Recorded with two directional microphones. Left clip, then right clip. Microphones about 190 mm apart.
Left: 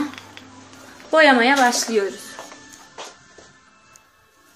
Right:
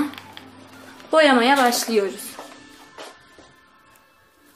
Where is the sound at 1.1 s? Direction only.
15° right (ahead or behind).